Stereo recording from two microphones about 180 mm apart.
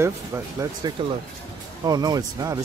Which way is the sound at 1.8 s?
20° right (ahead or behind).